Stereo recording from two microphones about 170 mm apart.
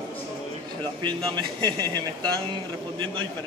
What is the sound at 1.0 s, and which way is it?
Speech, 25° right (ahead or behind).